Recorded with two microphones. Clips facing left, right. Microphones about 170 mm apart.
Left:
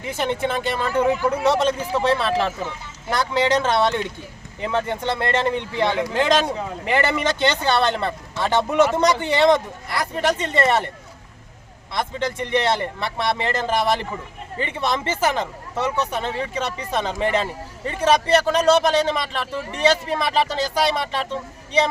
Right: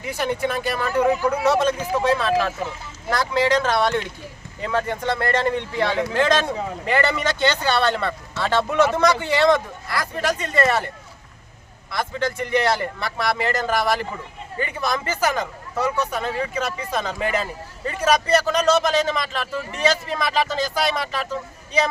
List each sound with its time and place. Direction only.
0.2 s speech: 25° left (ahead or behind)
11.9 s speech: 20° left (ahead or behind)